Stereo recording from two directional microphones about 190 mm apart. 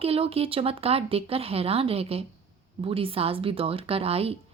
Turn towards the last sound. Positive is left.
turn(degrees=-30)  # may be behind; listen again after turning